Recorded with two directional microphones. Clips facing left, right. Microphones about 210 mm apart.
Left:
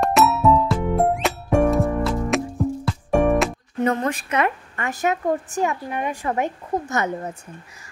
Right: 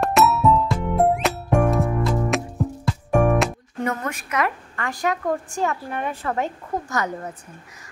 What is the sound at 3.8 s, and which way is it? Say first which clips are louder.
A woman's voice: left 5 dB; 30° left (ahead or behind).